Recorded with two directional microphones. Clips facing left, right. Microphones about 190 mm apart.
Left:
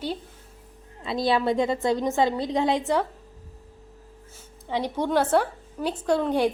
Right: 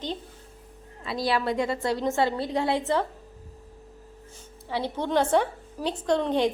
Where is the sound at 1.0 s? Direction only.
25° left (ahead or behind).